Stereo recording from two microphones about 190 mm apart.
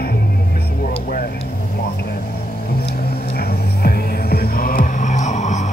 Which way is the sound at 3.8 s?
50° left (ahead or behind).